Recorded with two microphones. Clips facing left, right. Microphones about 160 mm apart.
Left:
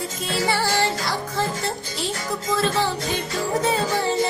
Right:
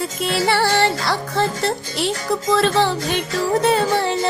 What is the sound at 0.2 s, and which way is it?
Music, 70° right (ahead or behind).